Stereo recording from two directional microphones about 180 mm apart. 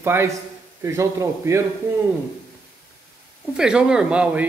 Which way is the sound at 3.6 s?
5° right (ahead or behind).